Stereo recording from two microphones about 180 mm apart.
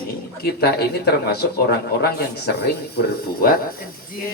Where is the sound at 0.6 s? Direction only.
60° left (ahead or behind).